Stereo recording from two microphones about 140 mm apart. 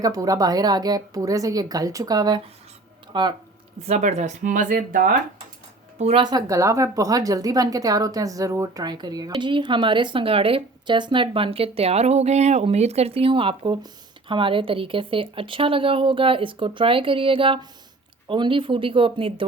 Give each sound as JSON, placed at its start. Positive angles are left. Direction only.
{"t": 0.0, "sound": "speech", "side_deg": -25}
{"t": 3.8, "sound": "speech", "side_deg": -55}
{"t": 6.0, "sound": "speech", "side_deg": -45}
{"t": 6.2, "sound": "a woman's voice", "side_deg": -25}